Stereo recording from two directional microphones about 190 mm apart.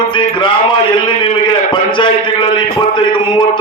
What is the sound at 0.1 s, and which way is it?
Speech, 25° left (ahead or behind).